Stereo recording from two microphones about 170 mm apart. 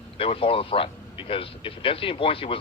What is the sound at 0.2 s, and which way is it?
Speech, 35° left (ahead or behind).